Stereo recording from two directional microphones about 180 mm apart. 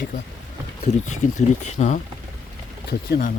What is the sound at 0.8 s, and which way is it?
Speech, 40° left (ahead or behind).